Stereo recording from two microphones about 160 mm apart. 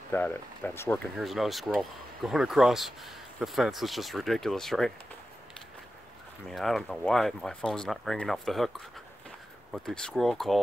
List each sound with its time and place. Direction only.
0.1 s speech: 10° left (ahead or behind)
1.1 s speech: centre (ahead or behind)
6.5 s speech: centre (ahead or behind)